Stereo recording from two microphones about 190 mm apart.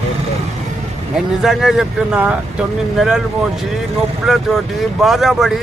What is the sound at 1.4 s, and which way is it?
Speech, centre (ahead or behind).